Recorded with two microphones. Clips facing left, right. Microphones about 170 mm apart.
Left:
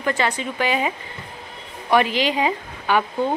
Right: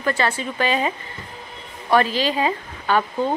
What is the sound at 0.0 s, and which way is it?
A woman's voice, 15° left (ahead or behind).